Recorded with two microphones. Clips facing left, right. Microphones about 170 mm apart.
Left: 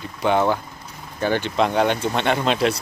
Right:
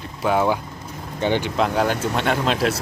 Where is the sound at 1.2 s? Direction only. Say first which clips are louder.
Right 1 dB; 20° right (ahead or behind).